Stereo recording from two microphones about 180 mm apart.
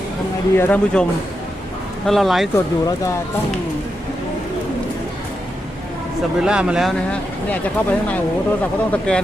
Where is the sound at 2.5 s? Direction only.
15° left (ahead or behind).